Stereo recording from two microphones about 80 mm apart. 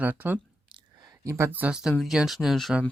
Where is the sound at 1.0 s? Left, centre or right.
Right.